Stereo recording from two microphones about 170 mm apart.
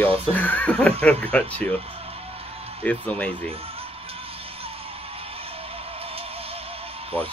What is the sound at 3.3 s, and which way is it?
Music, 35° right (ahead or behind).